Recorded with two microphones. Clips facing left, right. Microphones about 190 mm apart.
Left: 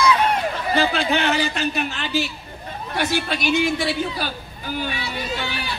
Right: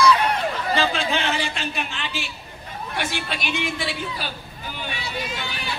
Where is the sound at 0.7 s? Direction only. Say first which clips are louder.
Left 4 dB; 60° left (ahead or behind).